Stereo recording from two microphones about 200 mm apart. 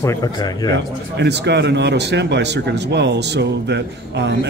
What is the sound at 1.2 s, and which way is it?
Speech, 60° right (ahead or behind).